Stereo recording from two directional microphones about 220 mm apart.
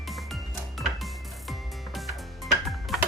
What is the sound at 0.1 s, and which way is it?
Music, centre (ahead or behind).